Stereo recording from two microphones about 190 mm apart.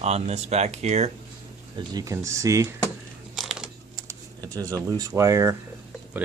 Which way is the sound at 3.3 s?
Centre (ahead or behind).